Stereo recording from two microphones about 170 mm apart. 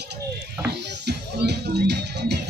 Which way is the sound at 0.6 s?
75° right (ahead or behind).